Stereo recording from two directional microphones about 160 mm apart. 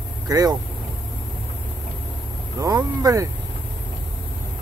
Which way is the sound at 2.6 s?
25° right (ahead or behind).